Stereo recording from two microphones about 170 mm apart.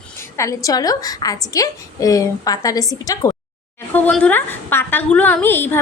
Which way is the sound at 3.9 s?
5° left (ahead or behind).